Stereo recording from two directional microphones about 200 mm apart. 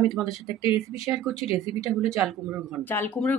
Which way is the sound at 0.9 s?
10° right (ahead or behind).